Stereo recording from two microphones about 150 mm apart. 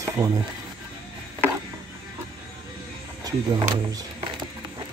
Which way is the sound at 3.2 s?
25° right (ahead or behind).